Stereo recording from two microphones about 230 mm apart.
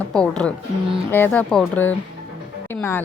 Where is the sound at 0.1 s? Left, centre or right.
Centre.